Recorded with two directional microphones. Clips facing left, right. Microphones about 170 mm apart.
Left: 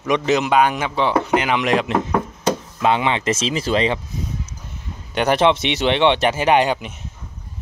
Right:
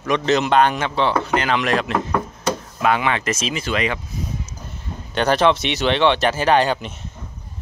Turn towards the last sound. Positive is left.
turn(degrees=15)  # may be behind; listen again after turning